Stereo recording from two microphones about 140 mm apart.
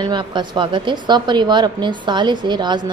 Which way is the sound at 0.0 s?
35° right (ahead or behind).